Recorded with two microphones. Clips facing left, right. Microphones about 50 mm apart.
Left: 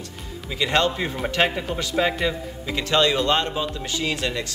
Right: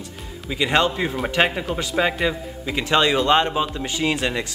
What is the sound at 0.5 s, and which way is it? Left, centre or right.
A man's voice, centre.